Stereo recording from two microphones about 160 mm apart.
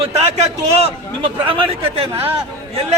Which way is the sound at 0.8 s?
35° right (ahead or behind).